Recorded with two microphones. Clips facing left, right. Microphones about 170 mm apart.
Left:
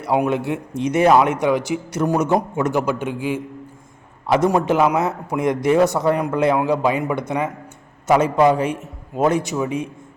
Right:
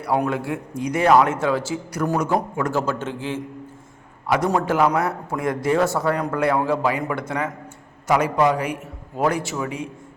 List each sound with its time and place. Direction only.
0.0 s a man's voice: 20° left (ahead or behind)
4.4 s a man's voice: 15° left (ahead or behind)